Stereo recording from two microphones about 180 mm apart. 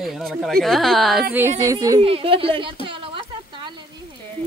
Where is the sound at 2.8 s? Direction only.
30° right (ahead or behind).